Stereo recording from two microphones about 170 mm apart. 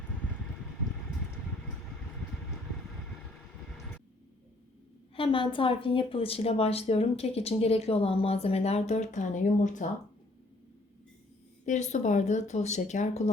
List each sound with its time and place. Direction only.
5.1 s a woman's voice: 30° left (ahead or behind); by 9.8 s 45° left (ahead or behind)
11.6 s speech: 45° left (ahead or behind)